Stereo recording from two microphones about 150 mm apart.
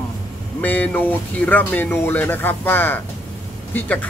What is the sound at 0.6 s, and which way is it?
Speech, 15° left (ahead or behind).